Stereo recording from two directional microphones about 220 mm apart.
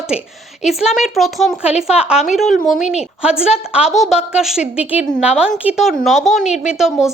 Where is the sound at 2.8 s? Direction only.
30° left (ahead or behind).